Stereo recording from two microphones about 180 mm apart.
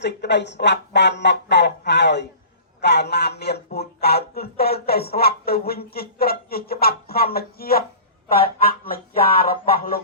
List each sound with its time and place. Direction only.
0.0 s speech: 75° left (ahead or behind); by 10.0 s 55° left (ahead or behind)